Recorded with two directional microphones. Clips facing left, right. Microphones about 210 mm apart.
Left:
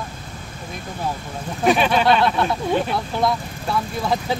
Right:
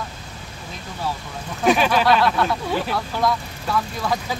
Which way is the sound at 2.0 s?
25° left (ahead or behind).